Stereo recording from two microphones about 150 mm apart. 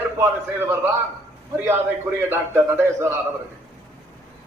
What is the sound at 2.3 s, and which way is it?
Speech, 15° right (ahead or behind).